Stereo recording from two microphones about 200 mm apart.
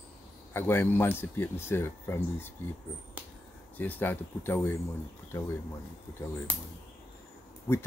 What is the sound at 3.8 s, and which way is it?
Speech, 10° left (ahead or behind).